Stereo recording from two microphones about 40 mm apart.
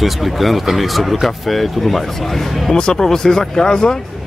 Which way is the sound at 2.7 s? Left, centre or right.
Centre.